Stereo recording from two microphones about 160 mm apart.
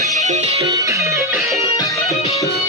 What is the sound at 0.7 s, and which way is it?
Music, 20° right (ahead or behind).